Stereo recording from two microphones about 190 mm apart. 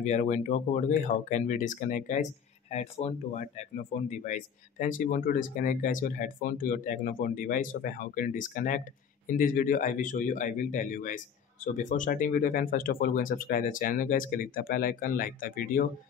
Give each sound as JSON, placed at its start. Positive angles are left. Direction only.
{"t": 0.0, "sound": "speech", "side_deg": 40}